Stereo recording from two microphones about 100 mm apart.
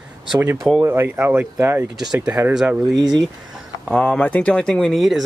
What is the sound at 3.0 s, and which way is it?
Speech, 45° right (ahead or behind).